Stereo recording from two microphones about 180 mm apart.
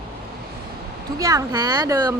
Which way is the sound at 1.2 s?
20° right (ahead or behind).